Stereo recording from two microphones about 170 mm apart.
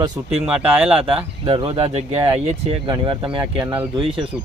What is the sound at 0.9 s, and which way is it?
Speech, 30° right (ahead or behind).